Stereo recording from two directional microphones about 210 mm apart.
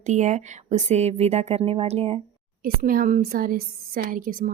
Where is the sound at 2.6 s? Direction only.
45° right (ahead or behind).